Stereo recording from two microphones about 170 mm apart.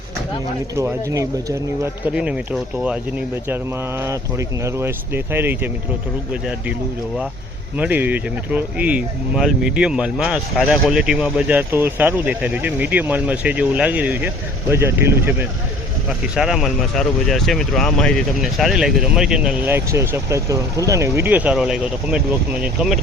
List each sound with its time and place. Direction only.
0.8 s speech: 15° right (ahead or behind)
2.1 s speech: 5° right (ahead or behind)
7.8 s speech: 10° right (ahead or behind)
16.3 s speech: centre (ahead or behind)